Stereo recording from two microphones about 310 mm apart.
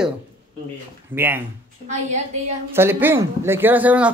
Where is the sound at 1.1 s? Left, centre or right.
Centre.